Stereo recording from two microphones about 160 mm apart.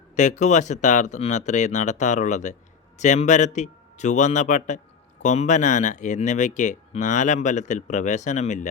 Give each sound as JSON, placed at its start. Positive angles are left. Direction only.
{"t": 0.2, "sound": "speech", "side_deg": 50}